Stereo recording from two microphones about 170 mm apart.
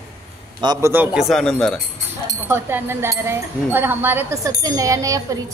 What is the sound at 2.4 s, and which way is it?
Speech, 15° right (ahead or behind).